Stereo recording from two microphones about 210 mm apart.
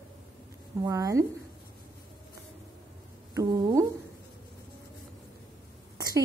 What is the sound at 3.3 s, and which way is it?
Speech, 15° right (ahead or behind).